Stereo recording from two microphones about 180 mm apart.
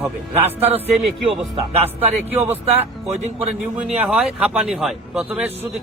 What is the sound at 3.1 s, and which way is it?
Speech, 40° right (ahead or behind).